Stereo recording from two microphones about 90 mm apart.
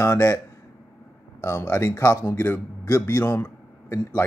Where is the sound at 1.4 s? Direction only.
35° left (ahead or behind).